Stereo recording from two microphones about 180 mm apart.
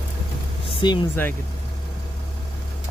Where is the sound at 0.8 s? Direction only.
25° left (ahead or behind).